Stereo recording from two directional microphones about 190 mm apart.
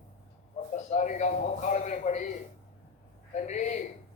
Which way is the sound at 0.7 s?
40° left (ahead or behind).